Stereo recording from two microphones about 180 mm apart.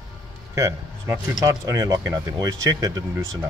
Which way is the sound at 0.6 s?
15° right (ahead or behind).